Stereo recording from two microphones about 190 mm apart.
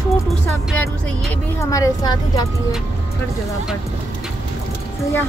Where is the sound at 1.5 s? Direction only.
15° left (ahead or behind).